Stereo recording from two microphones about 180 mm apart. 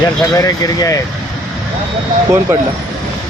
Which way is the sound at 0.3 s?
20° left (ahead or behind).